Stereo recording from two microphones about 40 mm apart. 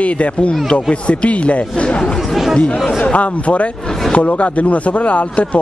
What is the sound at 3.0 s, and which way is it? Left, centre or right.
Speech, left.